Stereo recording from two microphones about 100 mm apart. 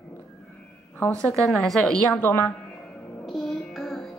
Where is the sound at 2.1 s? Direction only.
20° left (ahead or behind).